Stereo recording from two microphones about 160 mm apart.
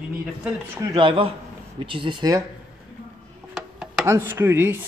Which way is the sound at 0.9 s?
35° right (ahead or behind).